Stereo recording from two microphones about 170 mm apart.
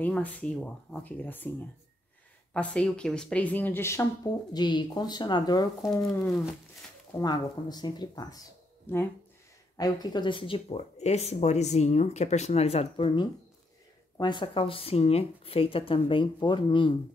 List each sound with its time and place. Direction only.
0.0 s speech: 10° left (ahead or behind)
2.5 s speech: 5° left (ahead or behind); by 5.7 s 25° left (ahead or behind)
5.8 s speech: centre (ahead or behind)
7.2 s speech: 25° left (ahead or behind)